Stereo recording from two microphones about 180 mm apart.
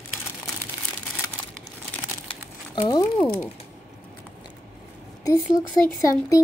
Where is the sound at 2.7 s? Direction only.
20° left (ahead or behind).